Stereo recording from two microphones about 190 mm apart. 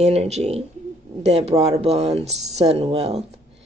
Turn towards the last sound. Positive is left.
turn(degrees=-35)  # may be behind; listen again after turning